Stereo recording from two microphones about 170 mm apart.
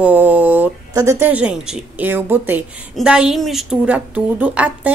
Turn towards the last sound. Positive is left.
turn(degrees=-10)  # may be behind; listen again after turning